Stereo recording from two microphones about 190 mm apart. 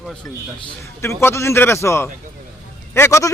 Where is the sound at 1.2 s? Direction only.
15° left (ahead or behind).